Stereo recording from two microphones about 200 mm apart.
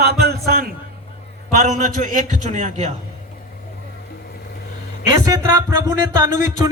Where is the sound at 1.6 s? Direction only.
40° right (ahead or behind).